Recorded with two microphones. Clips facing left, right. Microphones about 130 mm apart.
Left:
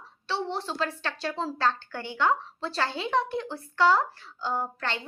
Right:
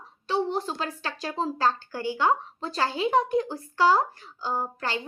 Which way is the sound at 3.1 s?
40° right (ahead or behind).